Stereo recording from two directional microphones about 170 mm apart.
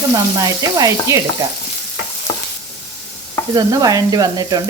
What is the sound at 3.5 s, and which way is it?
Frying, 20° right (ahead or behind).